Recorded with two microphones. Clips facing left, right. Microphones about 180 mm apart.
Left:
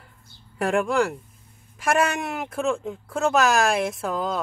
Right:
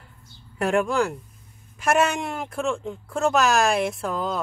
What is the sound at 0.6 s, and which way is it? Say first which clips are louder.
Speech: even; centre (ahead or behind).